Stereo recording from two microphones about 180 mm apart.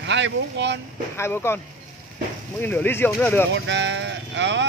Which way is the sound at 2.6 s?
10° left (ahead or behind).